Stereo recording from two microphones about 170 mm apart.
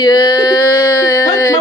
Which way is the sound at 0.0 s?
25° left (ahead or behind).